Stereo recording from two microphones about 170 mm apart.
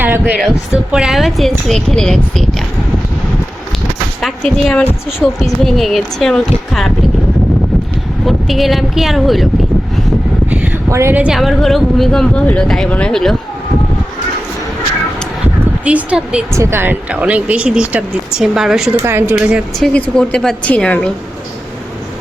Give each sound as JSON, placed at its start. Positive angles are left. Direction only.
{"t": 0.0, "sound": "speech", "side_deg": -10}
{"t": 4.2, "sound": "a woman's voice", "side_deg": 5}
{"t": 8.2, "sound": "speech", "side_deg": 0}
{"t": 10.5, "sound": "speech", "side_deg": -15}
{"t": 15.6, "sound": "speech", "side_deg": -10}
{"t": 19.0, "sound": "speech", "side_deg": -15}
{"t": 19.9, "sound": "a woman's voice", "side_deg": 5}